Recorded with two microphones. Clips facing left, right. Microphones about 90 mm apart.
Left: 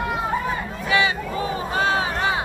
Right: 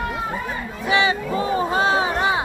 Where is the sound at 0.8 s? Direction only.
30° right (ahead or behind).